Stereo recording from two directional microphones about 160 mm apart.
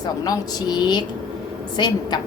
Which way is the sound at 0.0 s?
25° left (ahead or behind).